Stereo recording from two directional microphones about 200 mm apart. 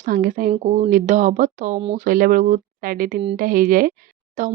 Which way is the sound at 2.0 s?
45° right (ahead or behind).